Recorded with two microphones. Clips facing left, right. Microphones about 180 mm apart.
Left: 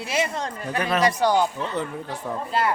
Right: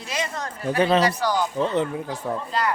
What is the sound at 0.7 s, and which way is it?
Speech, 30° right (ahead or behind).